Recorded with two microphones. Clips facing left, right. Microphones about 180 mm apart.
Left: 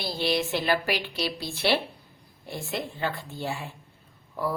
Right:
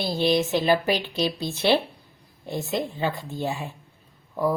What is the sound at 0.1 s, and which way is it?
A woman's voice, 20° right (ahead or behind).